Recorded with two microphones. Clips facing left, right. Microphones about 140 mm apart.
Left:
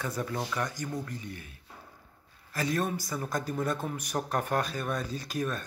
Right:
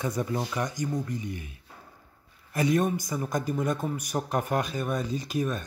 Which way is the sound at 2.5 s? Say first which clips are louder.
Right 6 dB; 20° right (ahead or behind).